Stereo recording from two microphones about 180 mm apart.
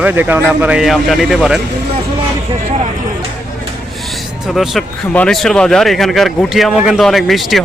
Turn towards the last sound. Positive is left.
turn(degrees=0)  # may be behind; listen again after turning